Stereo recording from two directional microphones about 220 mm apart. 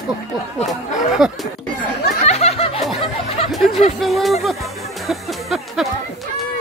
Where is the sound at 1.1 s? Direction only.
Centre (ahead or behind).